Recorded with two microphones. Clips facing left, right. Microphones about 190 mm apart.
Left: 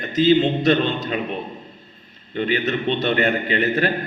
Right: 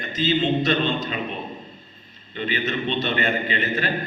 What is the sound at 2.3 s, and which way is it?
A man's voice, 50° left (ahead or behind).